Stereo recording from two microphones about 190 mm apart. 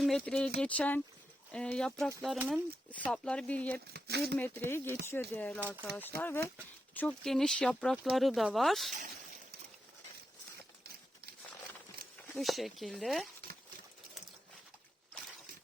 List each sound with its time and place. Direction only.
0.0 s speech: 5° left (ahead or behind)
3.9 s speech: 55° right (ahead or behind)
4.4 s speech: 10° left (ahead or behind)
12.4 s speech: centre (ahead or behind)